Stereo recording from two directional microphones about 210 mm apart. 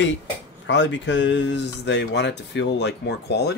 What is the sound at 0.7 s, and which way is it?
Speech, 60° left (ahead or behind).